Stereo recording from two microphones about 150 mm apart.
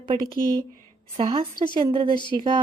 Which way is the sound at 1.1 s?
35° right (ahead or behind).